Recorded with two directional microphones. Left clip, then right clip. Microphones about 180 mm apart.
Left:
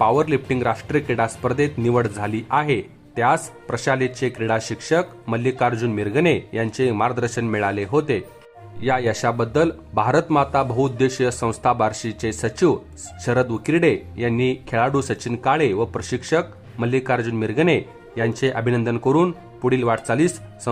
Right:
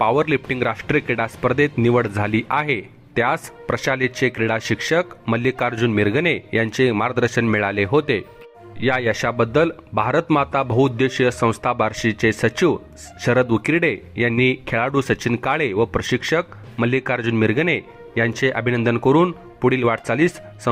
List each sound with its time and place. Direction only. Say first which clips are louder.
0.0 s speech: even; 20° right (ahead or behind)